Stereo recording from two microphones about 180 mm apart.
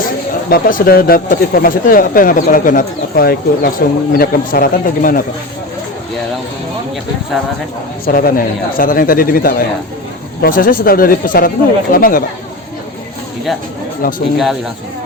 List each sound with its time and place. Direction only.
0.5 s a man's voice: 55° left (ahead or behind)
8.0 s a man's voice: 50° left (ahead or behind)
14.0 s speech: 55° left (ahead or behind)